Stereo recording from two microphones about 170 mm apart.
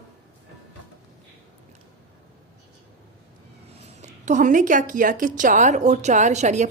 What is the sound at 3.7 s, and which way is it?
A woman's voice, 40° right (ahead or behind).